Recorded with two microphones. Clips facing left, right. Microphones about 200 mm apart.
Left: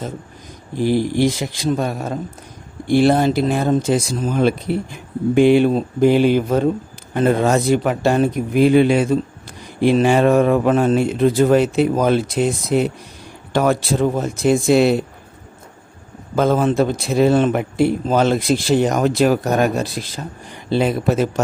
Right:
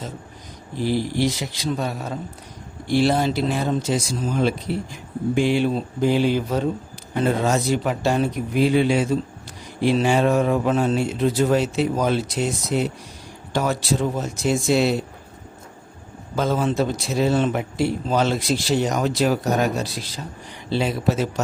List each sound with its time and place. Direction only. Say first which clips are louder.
0.8 s speech: left 5 dB; 50° left (ahead or behind)
16.3 s speech: left 5 dB; 55° left (ahead or behind)